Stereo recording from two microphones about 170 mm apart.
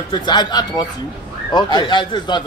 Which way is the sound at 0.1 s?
25° left (ahead or behind).